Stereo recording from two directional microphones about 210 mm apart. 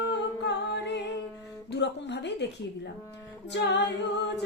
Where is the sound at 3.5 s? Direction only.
55° left (ahead or behind).